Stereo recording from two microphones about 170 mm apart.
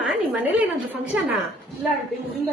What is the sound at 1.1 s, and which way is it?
Speech, 10° right (ahead or behind).